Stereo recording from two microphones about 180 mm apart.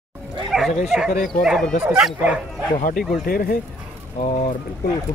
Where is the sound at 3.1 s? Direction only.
55° left (ahead or behind).